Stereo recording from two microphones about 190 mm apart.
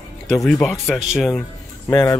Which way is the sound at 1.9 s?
20° left (ahead or behind).